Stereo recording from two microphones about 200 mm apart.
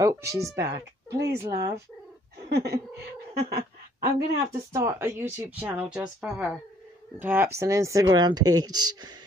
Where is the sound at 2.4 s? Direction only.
55° right (ahead or behind).